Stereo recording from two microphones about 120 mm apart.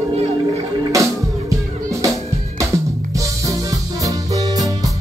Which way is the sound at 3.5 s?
30° right (ahead or behind).